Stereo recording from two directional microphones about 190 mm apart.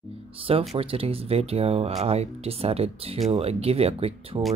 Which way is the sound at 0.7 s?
30° right (ahead or behind).